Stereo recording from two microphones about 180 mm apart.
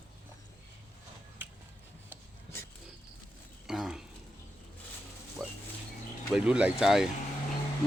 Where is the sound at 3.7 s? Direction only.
5° right (ahead or behind).